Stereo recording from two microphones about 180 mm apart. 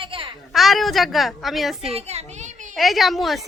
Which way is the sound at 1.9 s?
35° right (ahead or behind).